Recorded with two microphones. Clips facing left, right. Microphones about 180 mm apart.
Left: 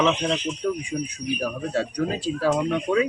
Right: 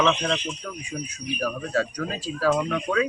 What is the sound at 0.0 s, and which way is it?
Speech, 5° left (ahead or behind).